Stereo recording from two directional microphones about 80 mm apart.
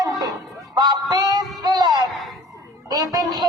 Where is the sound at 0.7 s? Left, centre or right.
Right.